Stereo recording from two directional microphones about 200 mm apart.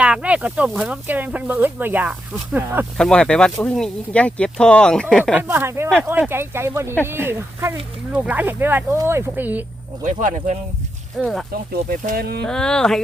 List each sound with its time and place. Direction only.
0.0 s speech: 5° right (ahead or behind)
3.0 s speech: 5° left (ahead or behind)
5.4 s speech: 10° right (ahead or behind)
10.0 s speech: 40° right (ahead or behind)
11.2 s speech: centre (ahead or behind)
11.7 s speech: 50° right (ahead or behind)
12.5 s speech: 5° left (ahead or behind)